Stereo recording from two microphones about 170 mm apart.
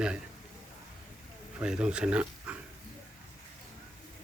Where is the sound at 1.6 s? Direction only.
5° right (ahead or behind).